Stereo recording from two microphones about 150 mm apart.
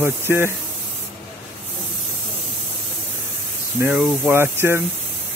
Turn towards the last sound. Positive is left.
turn(degrees=-15)  # may be behind; listen again after turning